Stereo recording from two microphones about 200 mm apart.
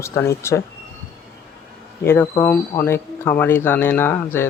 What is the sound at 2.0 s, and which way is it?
Speech, 10° left (ahead or behind).